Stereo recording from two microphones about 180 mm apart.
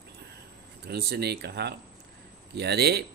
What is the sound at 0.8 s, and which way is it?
A man's voice, 65° right (ahead or behind).